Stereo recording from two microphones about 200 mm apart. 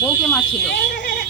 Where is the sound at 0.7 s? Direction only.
60° left (ahead or behind).